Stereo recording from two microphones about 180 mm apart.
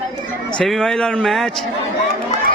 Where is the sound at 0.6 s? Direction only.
5° left (ahead or behind).